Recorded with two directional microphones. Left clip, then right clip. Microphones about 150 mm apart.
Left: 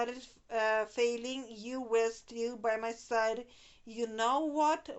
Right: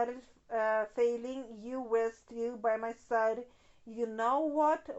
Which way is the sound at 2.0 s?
45° right (ahead or behind).